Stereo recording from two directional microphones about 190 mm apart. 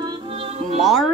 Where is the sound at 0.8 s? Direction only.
Centre (ahead or behind).